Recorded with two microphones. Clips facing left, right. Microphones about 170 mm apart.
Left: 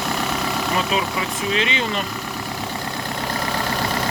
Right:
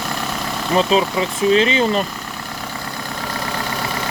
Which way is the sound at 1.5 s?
35° right (ahead or behind).